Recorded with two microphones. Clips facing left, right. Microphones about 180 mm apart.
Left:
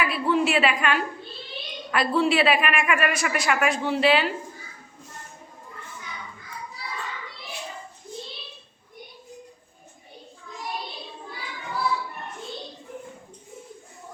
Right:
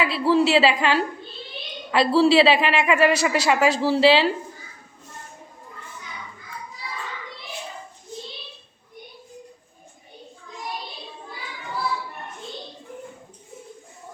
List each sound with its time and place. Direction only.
0.0 s a man's voice: 30° right (ahead or behind)